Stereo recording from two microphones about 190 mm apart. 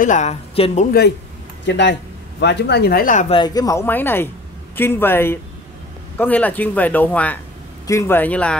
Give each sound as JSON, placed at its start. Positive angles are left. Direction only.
{"t": 0.0, "sound": "speech", "side_deg": 40}
{"t": 1.7, "sound": "speech", "side_deg": 65}
{"t": 3.3, "sound": "speech", "side_deg": 25}